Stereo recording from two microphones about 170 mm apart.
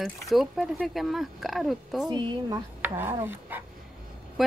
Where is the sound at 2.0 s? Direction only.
25° right (ahead or behind).